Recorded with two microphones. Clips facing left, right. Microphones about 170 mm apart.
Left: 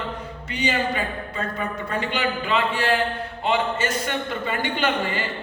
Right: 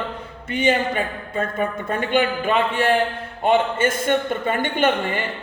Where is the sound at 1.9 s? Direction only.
50° right (ahead or behind).